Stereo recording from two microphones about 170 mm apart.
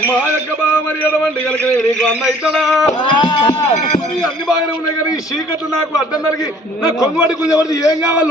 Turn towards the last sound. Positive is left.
turn(degrees=20)  # may be behind; listen again after turning